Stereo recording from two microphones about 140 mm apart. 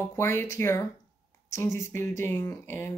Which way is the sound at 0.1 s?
20° left (ahead or behind).